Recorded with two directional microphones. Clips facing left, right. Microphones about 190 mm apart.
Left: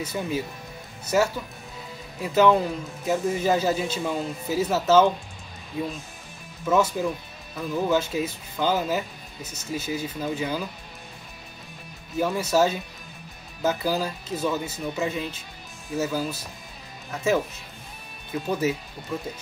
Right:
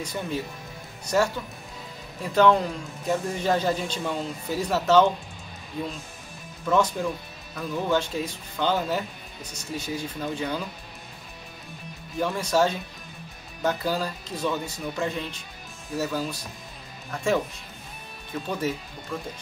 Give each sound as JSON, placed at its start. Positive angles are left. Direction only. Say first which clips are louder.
{"t": 0.0, "sound": "speech", "louder": "left 2 dB", "side_deg": 5}
{"t": 12.2, "sound": "speech", "louder": "left 2 dB", "side_deg": 5}
{"t": 18.5, "sound": "speech", "louder": "left 3 dB", "side_deg": 5}